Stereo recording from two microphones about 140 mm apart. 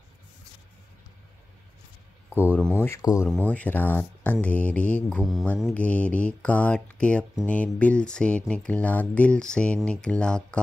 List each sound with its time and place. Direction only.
2.3 s speech: 10° right (ahead or behind)
2.8 s speech: 25° left (ahead or behind)
3.4 s speech: 10° left (ahead or behind)
5.2 s speech: centre (ahead or behind)
5.8 s speech: 10° left (ahead or behind)